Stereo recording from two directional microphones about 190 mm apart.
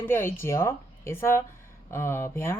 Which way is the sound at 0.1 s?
10° left (ahead or behind).